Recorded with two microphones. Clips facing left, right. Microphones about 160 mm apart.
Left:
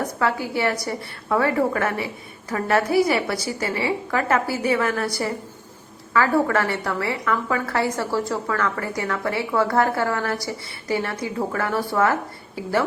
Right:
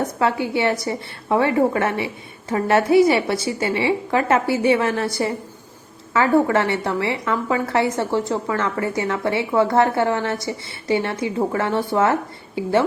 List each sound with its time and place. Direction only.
0.0 s a woman's voice: 25° right (ahead or behind)
6.1 s a woman's voice: 25° right (ahead or behind)